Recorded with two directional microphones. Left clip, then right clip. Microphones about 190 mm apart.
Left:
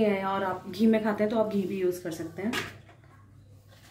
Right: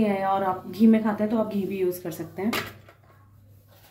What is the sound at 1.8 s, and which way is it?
Speech, 15° right (ahead or behind).